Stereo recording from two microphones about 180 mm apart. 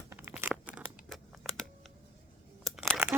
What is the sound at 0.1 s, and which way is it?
Tearing, 10° right (ahead or behind).